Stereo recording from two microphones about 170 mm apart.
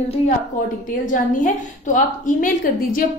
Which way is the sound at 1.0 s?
50° left (ahead or behind).